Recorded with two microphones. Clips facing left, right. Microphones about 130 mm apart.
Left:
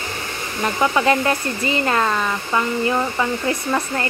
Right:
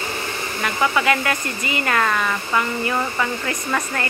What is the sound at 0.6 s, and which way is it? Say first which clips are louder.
Speech: left 2 dB; 30° left (ahead or behind).